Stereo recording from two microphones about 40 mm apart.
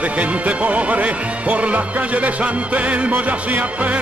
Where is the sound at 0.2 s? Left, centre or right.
Right.